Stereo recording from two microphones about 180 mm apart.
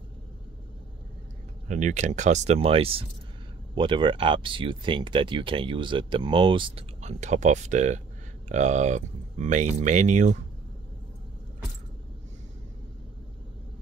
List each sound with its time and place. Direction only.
1.7 s speech: 40° right (ahead or behind)